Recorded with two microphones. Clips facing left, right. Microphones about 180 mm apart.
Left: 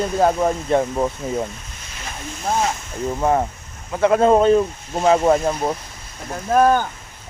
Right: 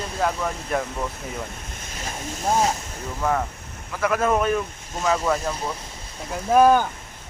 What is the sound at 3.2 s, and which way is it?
Speech, 30° left (ahead or behind).